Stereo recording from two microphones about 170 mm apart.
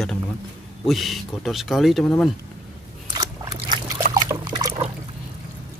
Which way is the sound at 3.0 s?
20° right (ahead or behind).